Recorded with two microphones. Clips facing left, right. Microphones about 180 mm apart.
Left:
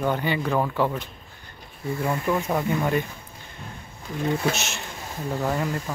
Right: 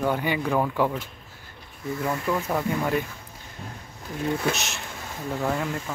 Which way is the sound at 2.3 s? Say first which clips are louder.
Left 2 dB; 10° left (ahead or behind).